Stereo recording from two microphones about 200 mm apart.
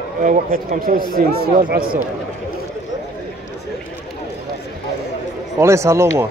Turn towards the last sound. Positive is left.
turn(degrees=-15)  # may be behind; listen again after turning